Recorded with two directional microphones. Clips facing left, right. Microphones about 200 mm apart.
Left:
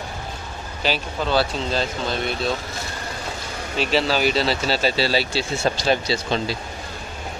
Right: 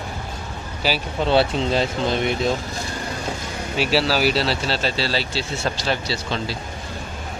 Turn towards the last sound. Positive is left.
turn(degrees=15)  # may be behind; listen again after turning